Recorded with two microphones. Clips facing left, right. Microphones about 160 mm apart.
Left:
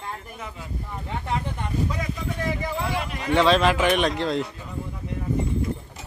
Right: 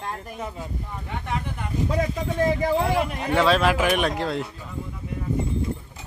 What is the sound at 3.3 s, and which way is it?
Speech, 5° right (ahead or behind).